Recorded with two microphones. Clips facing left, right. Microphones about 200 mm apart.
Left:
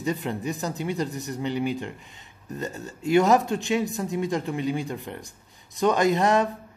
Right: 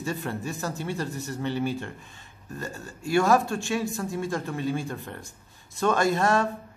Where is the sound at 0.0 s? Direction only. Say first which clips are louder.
Left 3 dB; 15° left (ahead or behind).